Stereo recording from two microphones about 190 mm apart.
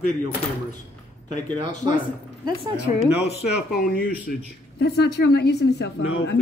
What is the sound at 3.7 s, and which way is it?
A man's voice, 50° left (ahead or behind).